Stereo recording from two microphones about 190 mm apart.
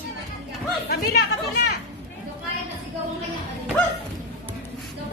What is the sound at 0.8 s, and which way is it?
Speech, 55° left (ahead or behind).